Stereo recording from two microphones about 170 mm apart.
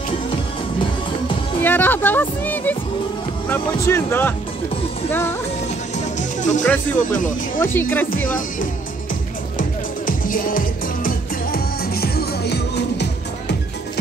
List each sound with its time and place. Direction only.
1.6 s speech: 10° left (ahead or behind)
6.1 s music: 45° left (ahead or behind)
7.0 s speech: 50° left (ahead or behind)
7.6 s speech: 10° left (ahead or behind)
9.6 s music: 55° left (ahead or behind); by 13.6 s 80° left